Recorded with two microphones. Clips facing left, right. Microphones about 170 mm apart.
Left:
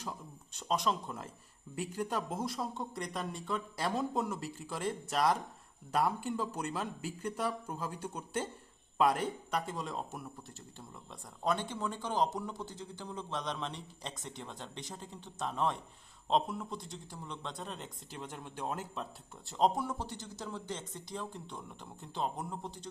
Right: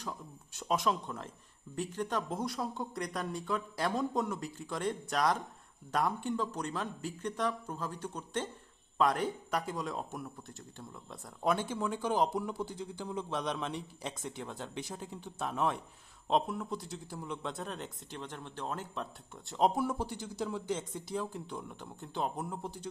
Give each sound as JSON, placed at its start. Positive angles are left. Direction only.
{"t": 0.0, "sound": "speech", "side_deg": 0}
{"t": 19.5, "sound": "speech", "side_deg": -5}